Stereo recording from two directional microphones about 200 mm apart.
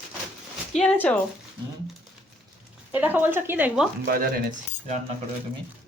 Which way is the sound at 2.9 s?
10° right (ahead or behind).